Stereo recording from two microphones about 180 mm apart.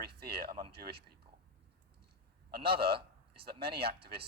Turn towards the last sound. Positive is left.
turn(degrees=-60)  # may be behind; listen again after turning